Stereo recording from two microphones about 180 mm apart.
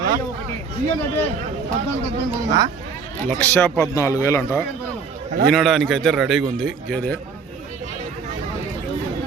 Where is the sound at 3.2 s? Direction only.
10° left (ahead or behind).